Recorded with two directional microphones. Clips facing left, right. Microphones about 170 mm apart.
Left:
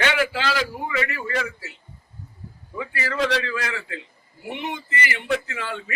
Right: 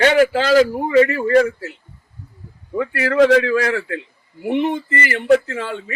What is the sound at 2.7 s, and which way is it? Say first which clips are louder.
A man's voice: right 11 dB; 55° right (ahead or behind).